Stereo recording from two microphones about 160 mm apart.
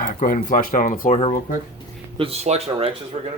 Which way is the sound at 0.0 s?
55° left (ahead or behind).